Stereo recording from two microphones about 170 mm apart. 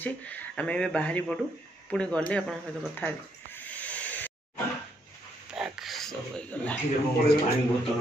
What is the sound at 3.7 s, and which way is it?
Hiss, 10° left (ahead or behind).